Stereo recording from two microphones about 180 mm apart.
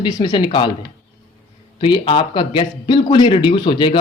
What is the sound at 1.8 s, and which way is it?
Speech, 30° left (ahead or behind).